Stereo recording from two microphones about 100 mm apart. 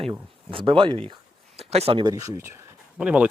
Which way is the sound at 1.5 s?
90° right.